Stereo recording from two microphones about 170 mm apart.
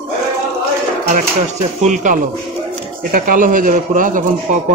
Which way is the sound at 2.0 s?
50° right (ahead or behind).